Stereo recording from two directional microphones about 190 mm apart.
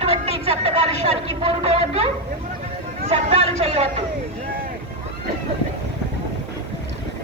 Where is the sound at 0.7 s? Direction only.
35° right (ahead or behind).